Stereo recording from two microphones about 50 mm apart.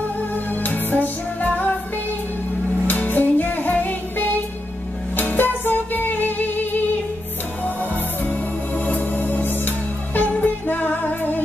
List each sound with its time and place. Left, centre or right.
0.6 s music: left
2.9 s music: left